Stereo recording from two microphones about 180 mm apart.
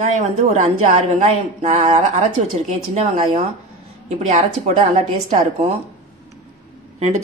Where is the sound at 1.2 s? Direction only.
35° right (ahead or behind).